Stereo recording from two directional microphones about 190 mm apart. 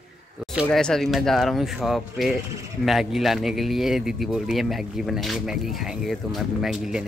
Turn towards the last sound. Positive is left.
turn(degrees=-5)  # may be behind; listen again after turning